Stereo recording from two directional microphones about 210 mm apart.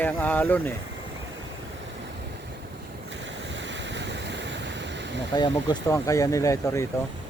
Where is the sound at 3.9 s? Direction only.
55° right (ahead or behind).